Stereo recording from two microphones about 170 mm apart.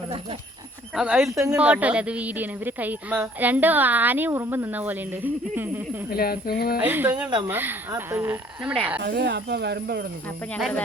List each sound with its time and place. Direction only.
0.9 s speech: centre (ahead or behind)
6.1 s speech: 65° left (ahead or behind)
6.7 s speech: 10° right (ahead or behind)
9.0 s speech: 85° right; by 10.1 s 70° right (ahead or behind)
10.2 s speech: 10° left (ahead or behind)